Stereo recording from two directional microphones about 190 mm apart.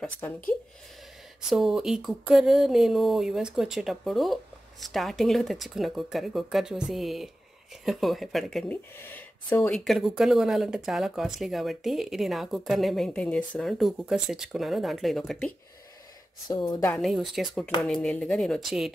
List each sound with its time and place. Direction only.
0.2 s speech: 10° left (ahead or behind)
1.5 s speech: centre (ahead or behind)
16.4 s a woman's voice: 20° left (ahead or behind)
16.9 s speech: centre (ahead or behind)